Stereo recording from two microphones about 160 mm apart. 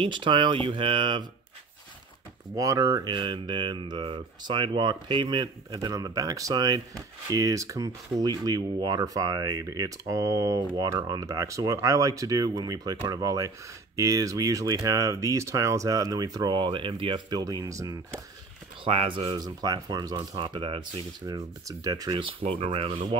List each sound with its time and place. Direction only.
0.0 s speech: 30° right (ahead or behind)
2.5 s speech: 20° right (ahead or behind)
18.9 s speech: 35° right (ahead or behind)
21.6 s speech: 20° right (ahead or behind)